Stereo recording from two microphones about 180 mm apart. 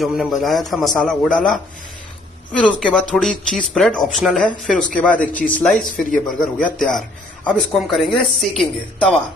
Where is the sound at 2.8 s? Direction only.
5° left (ahead or behind).